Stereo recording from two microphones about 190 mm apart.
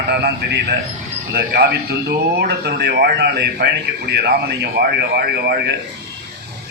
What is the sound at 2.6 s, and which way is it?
A man's voice, 60° right (ahead or behind).